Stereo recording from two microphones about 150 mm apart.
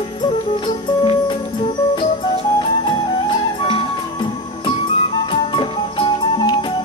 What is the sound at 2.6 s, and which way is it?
Music, 30° left (ahead or behind).